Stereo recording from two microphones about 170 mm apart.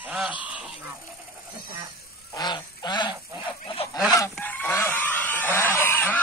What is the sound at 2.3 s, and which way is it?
Goose, 25° left (ahead or behind).